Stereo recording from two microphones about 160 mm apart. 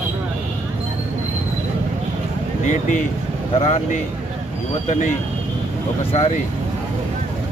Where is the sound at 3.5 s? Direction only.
40° left (ahead or behind).